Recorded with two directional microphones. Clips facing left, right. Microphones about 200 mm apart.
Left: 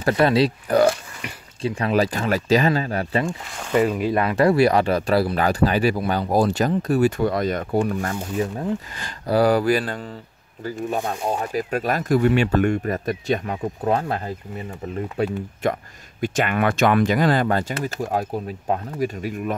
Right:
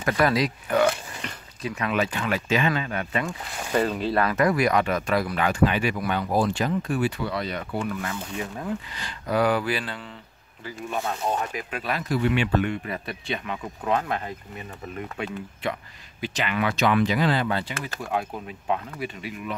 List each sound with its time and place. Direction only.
0.0 s speech: 30° left (ahead or behind)
3.3 s speech: 5° right (ahead or behind)
3.7 s speech: 10° left (ahead or behind)
4.2 s speech: 30° left (ahead or behind); by 10.0 s 45° left (ahead or behind)
11.1 s speech: 35° left (ahead or behind)
16.2 s speech: 50° left (ahead or behind)